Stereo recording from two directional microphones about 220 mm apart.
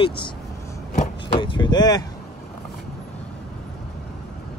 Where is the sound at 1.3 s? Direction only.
20° left (ahead or behind).